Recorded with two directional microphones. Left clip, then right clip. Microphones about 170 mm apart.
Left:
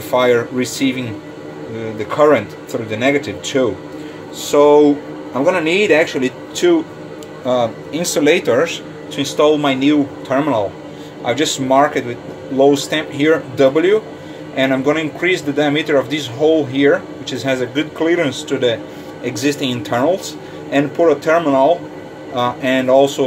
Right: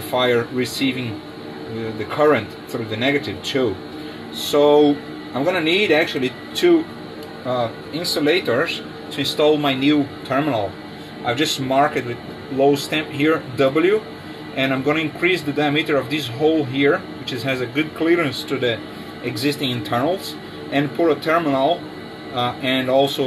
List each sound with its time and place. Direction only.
0.1 s speech: 10° left (ahead or behind)
2.0 s speech: 10° left (ahead or behind)
8.2 s speech: 25° left (ahead or behind)
9.1 s a man's voice: 5° left (ahead or behind)